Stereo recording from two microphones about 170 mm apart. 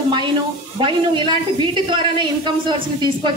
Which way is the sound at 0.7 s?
30° right (ahead or behind).